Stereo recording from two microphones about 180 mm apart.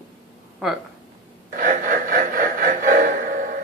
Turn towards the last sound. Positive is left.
turn(degrees=-50)  # may be behind; listen again after turning